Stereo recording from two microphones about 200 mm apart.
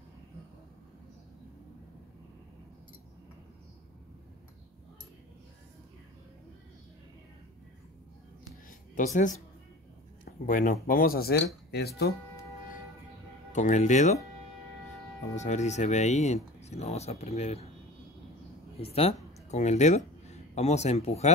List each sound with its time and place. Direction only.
8.6 s a sound: 40° left (ahead or behind)
10.2 s speech: 45° left (ahead or behind)
13.5 s speech: 40° left (ahead or behind)
15.3 s speech: 35° left (ahead or behind)
18.8 s speech: 30° left (ahead or behind)